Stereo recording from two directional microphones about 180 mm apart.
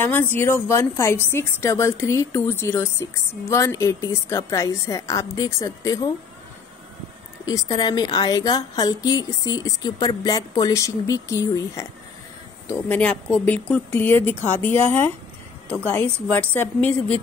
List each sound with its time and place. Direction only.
0.0 s a woman's voice: 10° left (ahead or behind)
7.4 s a woman's voice: 20° left (ahead or behind)